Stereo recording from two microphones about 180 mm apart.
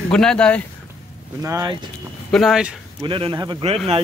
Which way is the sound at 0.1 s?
5° left (ahead or behind).